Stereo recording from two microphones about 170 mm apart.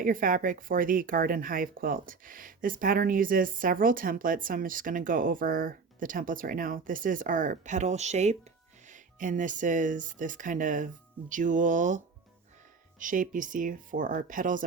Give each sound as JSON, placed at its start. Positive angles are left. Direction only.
{"t": 0.0, "sound": "speech", "side_deg": -55}